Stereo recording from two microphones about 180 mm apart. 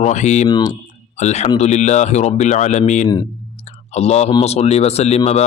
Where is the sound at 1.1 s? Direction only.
40° left (ahead or behind).